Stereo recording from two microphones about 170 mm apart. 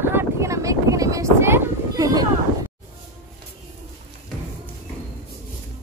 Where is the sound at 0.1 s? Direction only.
15° right (ahead or behind).